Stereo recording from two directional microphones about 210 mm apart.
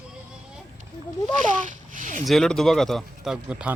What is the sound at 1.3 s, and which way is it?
Speech, 40° right (ahead or behind).